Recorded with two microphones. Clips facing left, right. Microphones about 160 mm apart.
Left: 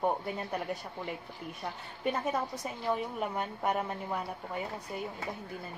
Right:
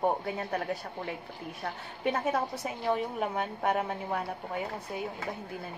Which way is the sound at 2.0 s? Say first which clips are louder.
Right 3 dB; 5° right (ahead or behind).